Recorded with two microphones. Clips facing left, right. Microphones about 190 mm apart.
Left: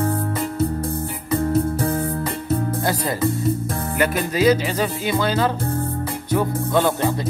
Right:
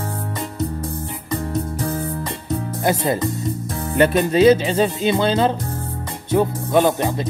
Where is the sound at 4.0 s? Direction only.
30° right (ahead or behind).